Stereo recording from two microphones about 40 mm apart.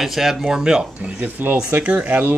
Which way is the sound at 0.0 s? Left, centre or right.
Centre.